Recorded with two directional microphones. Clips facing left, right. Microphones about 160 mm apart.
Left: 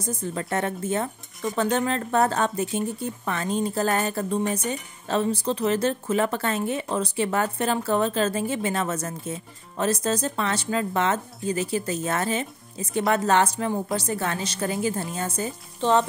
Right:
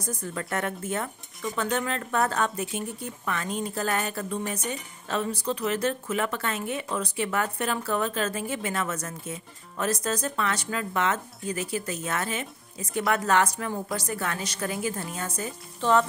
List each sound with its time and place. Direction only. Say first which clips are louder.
0.0 s speech: left 4 dB; 20° left (ahead or behind)